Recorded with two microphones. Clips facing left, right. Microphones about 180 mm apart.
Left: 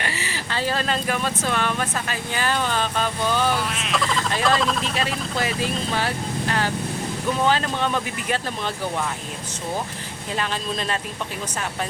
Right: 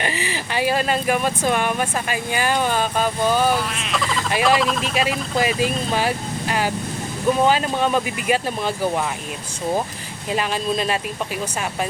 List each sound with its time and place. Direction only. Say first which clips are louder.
0.0 s speech: right 5 dB; 15° right (ahead or behind)
3.7 s speech: even; centre (ahead or behind)
10.3 s speech: right 5 dB; 10° right (ahead or behind)